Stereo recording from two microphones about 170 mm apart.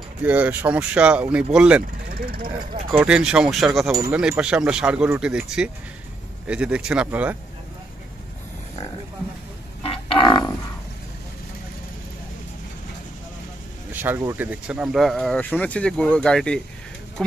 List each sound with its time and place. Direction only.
0.2 s speech: 10° right (ahead or behind)
2.0 s speech: 60° right (ahead or behind)
3.0 s speech: 5° right (ahead or behind)
9.8 s a sound: 30° left (ahead or behind)
13.9 s speech: 10° right (ahead or behind); by 16.6 s 5° left (ahead or behind)